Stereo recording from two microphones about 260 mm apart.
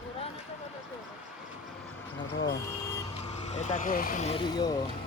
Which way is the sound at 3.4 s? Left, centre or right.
Left.